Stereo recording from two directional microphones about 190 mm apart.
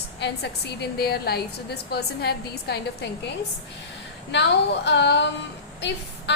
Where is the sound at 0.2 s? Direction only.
60° left (ahead or behind).